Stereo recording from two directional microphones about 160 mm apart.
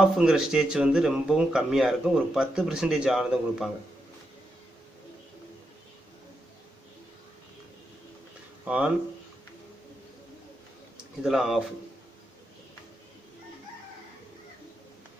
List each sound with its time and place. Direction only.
0.0 s speech: 5° right (ahead or behind)
8.6 s speech: 5° right (ahead or behind)
11.2 s speech: centre (ahead or behind)